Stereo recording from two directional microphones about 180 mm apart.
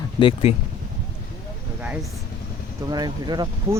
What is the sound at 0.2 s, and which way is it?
Speech, 30° left (ahead or behind).